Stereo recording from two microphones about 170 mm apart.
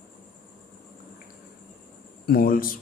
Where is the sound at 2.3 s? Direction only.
60° left (ahead or behind).